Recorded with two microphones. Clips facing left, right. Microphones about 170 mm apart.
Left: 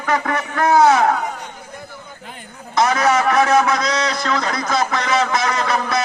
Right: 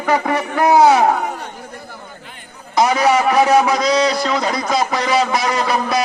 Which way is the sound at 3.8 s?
30° right (ahead or behind).